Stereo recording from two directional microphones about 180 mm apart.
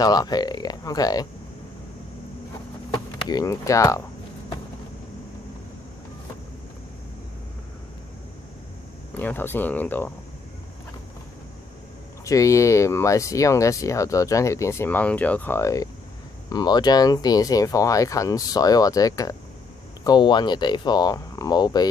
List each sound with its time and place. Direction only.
0.0 s speech: 20° left (ahead or behind)
3.3 s speech: 20° left (ahead or behind)
9.1 s speech: 10° left (ahead or behind)
12.3 s speech: 15° left (ahead or behind)